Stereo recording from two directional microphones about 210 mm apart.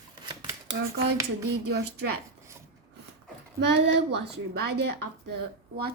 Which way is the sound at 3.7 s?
55° right (ahead or behind).